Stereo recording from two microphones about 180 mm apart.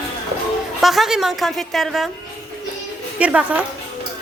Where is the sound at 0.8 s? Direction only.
Centre (ahead or behind).